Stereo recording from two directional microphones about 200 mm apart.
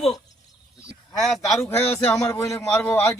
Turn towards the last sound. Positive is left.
turn(degrees=15)  # may be behind; listen again after turning